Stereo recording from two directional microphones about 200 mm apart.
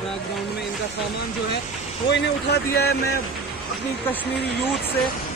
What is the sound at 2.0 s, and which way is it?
Speech, 55° left (ahead or behind).